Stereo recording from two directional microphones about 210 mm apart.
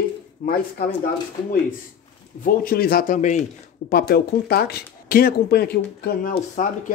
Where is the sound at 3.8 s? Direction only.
50° left (ahead or behind).